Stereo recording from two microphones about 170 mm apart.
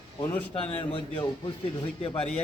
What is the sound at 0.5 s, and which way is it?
Speech, 30° left (ahead or behind).